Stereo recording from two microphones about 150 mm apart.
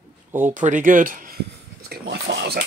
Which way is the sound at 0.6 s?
55° right (ahead or behind).